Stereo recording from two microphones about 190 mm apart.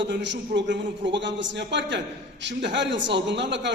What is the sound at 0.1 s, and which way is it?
A man's voice, 65° right (ahead or behind).